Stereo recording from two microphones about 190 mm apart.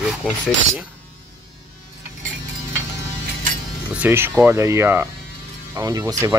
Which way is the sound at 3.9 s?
10° right (ahead or behind).